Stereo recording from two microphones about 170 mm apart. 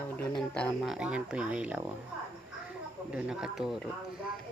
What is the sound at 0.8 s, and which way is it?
Speech, 5° right (ahead or behind).